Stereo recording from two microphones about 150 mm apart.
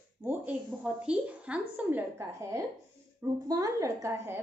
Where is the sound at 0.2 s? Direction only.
15° right (ahead or behind).